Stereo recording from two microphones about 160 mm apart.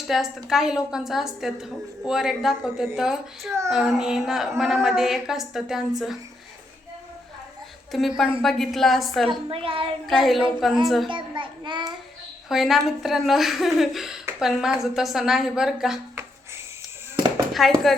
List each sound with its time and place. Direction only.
0.1 s a woman's voice: centre (ahead or behind)
7.9 s a woman's voice: centre (ahead or behind)
9.5 s a woman's voice: 35° right (ahead or behind)
10.1 s a woman's voice: centre (ahead or behind)
11.1 s child singing: 30° right (ahead or behind)
12.5 s a woman's voice: centre (ahead or behind)
17.5 s speech: centre (ahead or behind)